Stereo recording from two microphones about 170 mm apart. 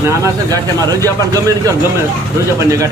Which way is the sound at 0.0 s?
20° right (ahead or behind).